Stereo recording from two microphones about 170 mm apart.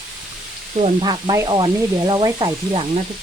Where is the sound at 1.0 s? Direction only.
25° right (ahead or behind).